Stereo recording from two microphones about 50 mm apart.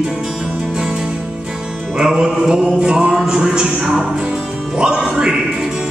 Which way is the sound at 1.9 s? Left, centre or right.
Centre.